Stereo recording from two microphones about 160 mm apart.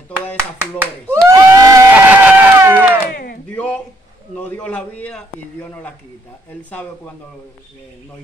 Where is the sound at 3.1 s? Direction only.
70° left (ahead or behind).